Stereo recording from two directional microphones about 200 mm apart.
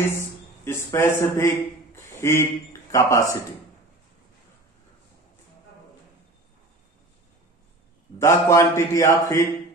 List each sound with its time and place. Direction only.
0.1 s speech: 15° left (ahead or behind)
2.0 s a sound: 15° left (ahead or behind)
2.9 s speech: 15° left (ahead or behind)
8.2 s speech: 15° left (ahead or behind)